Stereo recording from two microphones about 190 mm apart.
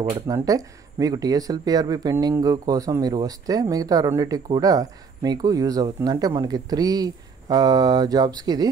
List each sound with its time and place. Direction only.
0.3 s speech: 20° right (ahead or behind)